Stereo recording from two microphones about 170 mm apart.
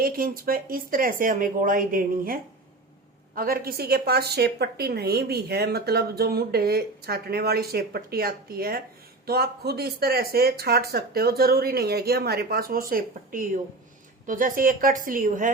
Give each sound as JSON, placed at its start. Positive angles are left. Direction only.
{"t": 0.0, "sound": "a woman's voice", "side_deg": -60}